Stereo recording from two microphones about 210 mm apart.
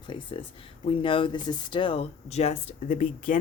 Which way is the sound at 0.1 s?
25° left (ahead or behind).